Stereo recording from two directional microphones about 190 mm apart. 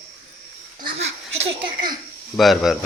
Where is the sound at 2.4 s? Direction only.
Centre (ahead or behind).